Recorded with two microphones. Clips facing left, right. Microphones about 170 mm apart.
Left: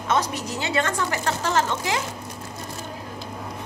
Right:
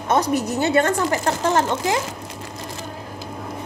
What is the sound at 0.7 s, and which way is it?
Speech, 40° right (ahead or behind).